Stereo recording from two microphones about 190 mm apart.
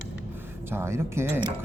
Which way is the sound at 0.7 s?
15° right (ahead or behind).